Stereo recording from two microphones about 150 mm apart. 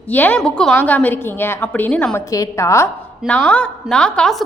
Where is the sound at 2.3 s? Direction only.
20° left (ahead or behind).